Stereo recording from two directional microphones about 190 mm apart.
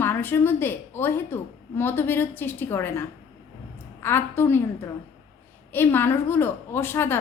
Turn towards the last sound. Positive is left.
turn(degrees=10)  # may be behind; listen again after turning